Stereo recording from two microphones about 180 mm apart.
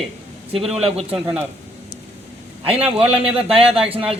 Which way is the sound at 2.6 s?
30° right (ahead or behind).